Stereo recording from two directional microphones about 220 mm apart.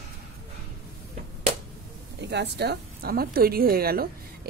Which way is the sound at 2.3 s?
50° right (ahead or behind).